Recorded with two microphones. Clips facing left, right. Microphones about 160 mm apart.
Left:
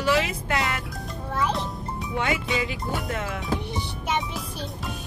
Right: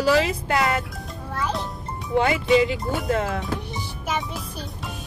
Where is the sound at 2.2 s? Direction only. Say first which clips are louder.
Right 8 dB; 35° right (ahead or behind).